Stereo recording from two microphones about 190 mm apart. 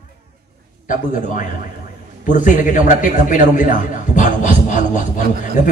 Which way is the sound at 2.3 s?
45° left (ahead or behind).